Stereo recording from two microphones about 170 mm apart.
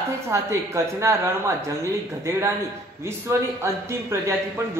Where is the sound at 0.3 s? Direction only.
15° right (ahead or behind).